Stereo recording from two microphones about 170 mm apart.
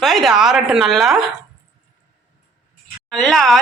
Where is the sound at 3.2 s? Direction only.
5° left (ahead or behind).